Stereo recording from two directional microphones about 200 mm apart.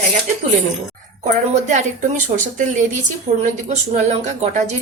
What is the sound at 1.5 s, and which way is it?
Speech, 35° right (ahead or behind).